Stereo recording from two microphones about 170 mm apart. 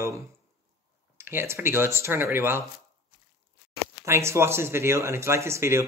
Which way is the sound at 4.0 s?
15° right (ahead or behind).